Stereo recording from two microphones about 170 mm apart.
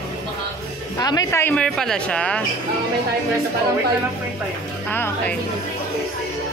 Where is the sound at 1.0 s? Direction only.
25° left (ahead or behind).